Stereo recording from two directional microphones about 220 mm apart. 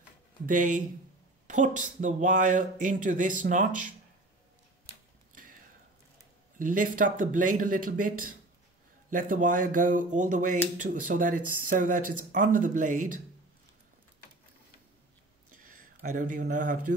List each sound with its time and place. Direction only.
0.5 s speech: 35° right (ahead or behind)
5.3 s a sound: 40° right (ahead or behind)
6.6 s speech: 40° right (ahead or behind)
15.6 s speech: 35° right (ahead or behind)